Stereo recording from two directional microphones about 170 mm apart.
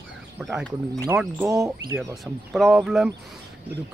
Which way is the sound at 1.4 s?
20° right (ahead or behind).